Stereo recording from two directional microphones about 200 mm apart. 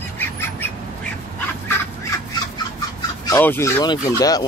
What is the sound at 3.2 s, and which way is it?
Speech, 10° left (ahead or behind).